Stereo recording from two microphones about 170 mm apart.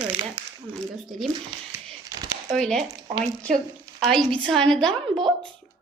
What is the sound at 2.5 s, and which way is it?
Speech, 5° left (ahead or behind).